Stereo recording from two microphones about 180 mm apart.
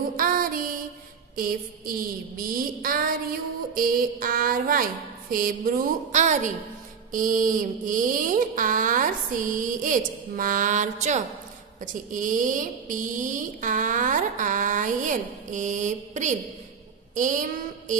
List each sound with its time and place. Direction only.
0.2 s music: 50° right (ahead or behind)
1.3 s a woman's voice: 55° right (ahead or behind)